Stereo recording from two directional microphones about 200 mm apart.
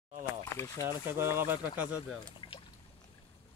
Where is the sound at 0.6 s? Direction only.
15° left (ahead or behind).